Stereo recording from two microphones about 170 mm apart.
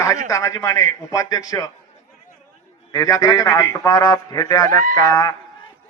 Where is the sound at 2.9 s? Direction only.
20° left (ahead or behind).